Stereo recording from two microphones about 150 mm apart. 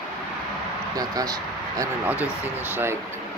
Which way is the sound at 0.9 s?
25° right (ahead or behind).